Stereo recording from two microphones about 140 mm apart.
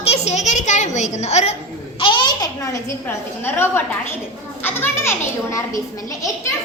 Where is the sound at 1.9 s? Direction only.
35° left (ahead or behind).